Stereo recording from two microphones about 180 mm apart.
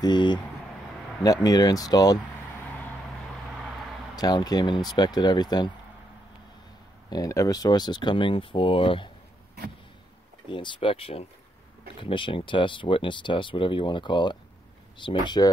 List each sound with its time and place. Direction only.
0.0 s speech: 25° left (ahead or behind)
4.1 s speech: 20° left (ahead or behind)
7.1 s speech: 20° left (ahead or behind)
10.5 s speech: 30° left (ahead or behind)